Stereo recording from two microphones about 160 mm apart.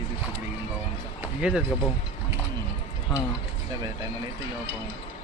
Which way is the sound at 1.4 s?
10° right (ahead or behind).